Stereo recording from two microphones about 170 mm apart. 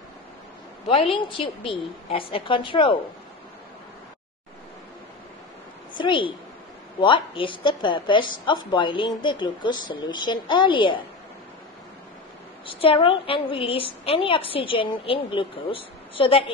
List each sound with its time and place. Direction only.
0.8 s a woman's voice: 30° left (ahead or behind)
5.9 s a woman's voice: 30° left (ahead or behind)
12.6 s a woman's voice: 30° left (ahead or behind)